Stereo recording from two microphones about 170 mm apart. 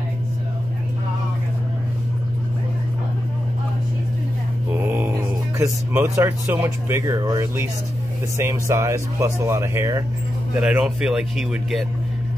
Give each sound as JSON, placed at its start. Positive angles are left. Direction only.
{"t": 4.7, "sound": "mantra", "side_deg": -10}
{"t": 5.6, "sound": "speech", "side_deg": -20}